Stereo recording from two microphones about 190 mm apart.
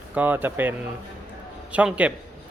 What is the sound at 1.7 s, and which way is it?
Speech, 5° right (ahead or behind).